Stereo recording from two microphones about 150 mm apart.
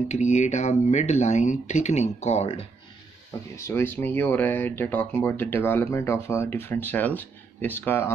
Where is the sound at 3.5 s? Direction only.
20° left (ahead or behind).